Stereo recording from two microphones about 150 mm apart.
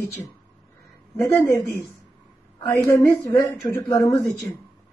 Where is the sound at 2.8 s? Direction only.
20° left (ahead or behind).